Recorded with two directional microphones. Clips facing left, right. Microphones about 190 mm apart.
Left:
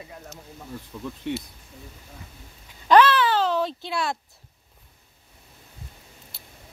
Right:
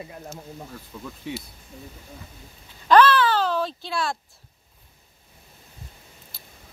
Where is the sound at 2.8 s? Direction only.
20° left (ahead or behind).